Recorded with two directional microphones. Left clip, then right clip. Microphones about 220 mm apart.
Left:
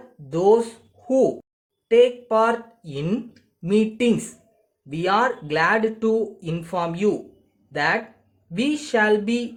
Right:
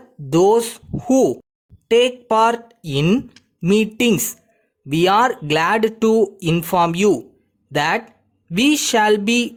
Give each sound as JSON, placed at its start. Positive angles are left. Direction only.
{"t": 0.3, "sound": "speech", "side_deg": -45}